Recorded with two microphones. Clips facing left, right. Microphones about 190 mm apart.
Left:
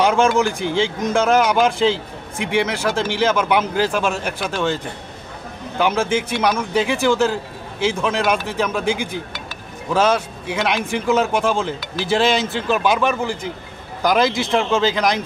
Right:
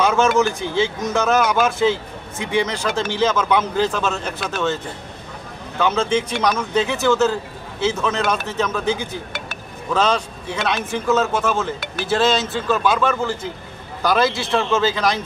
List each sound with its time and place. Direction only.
0.0 s speech: 15° left (ahead or behind)
5.8 s speech: 10° left (ahead or behind)